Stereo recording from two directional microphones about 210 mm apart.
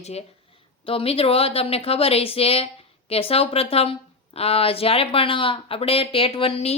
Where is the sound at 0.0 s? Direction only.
30° left (ahead or behind).